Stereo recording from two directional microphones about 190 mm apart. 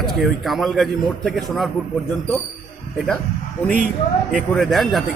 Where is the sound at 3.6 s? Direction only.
40° right (ahead or behind).